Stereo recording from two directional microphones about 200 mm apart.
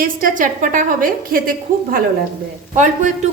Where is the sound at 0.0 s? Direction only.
40° right (ahead or behind).